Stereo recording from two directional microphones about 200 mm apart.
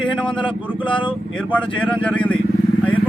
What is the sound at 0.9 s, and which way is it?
Speech, 25° left (ahead or behind).